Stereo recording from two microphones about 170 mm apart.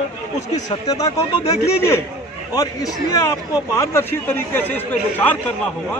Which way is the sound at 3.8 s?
15° left (ahead or behind).